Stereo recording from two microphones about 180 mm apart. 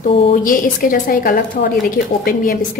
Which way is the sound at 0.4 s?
50° left (ahead or behind).